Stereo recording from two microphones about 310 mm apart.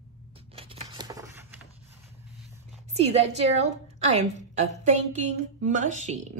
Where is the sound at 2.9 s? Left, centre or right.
Centre.